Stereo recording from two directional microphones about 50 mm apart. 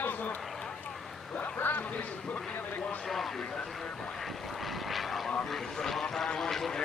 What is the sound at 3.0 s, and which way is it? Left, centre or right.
Speech, centre.